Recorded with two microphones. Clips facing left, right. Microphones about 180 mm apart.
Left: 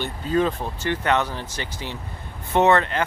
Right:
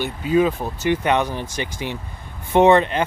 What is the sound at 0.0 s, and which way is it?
Speech, 10° right (ahead or behind).